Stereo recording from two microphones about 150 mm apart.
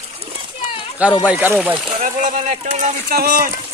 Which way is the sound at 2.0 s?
60° right (ahead or behind).